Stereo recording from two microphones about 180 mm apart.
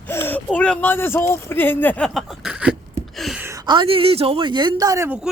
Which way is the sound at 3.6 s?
30° right (ahead or behind).